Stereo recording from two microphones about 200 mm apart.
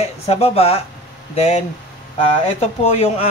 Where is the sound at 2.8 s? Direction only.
30° left (ahead or behind).